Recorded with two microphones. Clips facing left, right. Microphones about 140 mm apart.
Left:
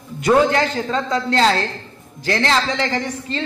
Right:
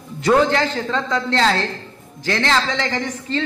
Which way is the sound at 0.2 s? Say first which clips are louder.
Left 1 dB; 20° left (ahead or behind).